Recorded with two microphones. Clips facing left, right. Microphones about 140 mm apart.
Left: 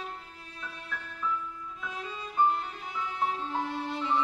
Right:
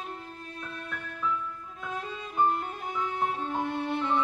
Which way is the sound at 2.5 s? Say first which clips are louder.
Right 2 dB; 50° right (ahead or behind).